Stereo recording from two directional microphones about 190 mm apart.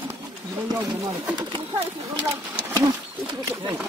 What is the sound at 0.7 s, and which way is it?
Speech, 15° right (ahead or behind).